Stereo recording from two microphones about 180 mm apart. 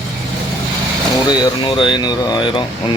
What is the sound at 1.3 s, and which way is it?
Speech, 25° left (ahead or behind).